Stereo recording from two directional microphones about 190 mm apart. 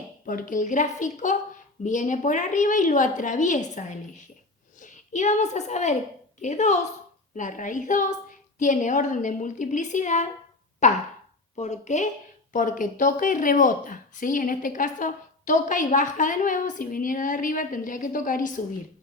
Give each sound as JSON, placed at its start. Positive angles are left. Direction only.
{"t": 0.3, "sound": "a woman's voice", "side_deg": 45}